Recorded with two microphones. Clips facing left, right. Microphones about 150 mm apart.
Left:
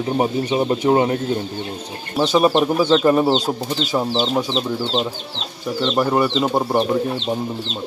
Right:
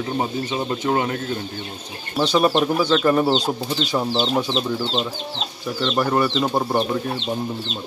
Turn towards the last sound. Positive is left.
turn(degrees=10)  # may be behind; listen again after turning